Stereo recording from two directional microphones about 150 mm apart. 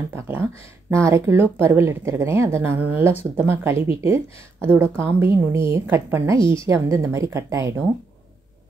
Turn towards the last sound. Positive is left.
turn(degrees=-20)  # may be behind; listen again after turning